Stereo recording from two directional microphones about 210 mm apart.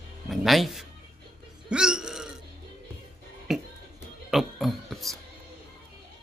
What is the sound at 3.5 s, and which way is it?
Music, centre (ahead or behind).